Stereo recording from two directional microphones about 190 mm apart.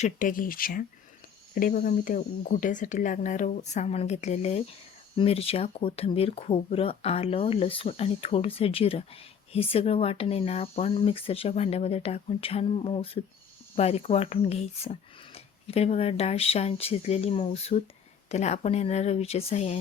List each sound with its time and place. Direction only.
0.0 s speech: 45° left (ahead or behind)